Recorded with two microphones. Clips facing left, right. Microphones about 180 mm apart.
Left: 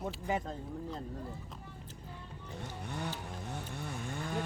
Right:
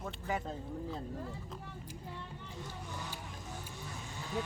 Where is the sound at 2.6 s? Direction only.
65° left (ahead or behind).